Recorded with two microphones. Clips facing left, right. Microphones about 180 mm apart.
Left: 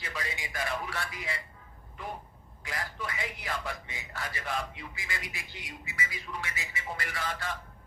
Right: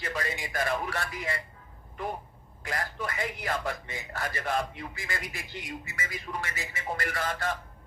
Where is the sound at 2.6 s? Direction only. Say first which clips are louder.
Right 4 dB; 50° right (ahead or behind).